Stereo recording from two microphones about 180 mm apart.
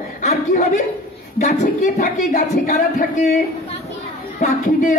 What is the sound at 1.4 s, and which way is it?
Speech, 45° left (ahead or behind).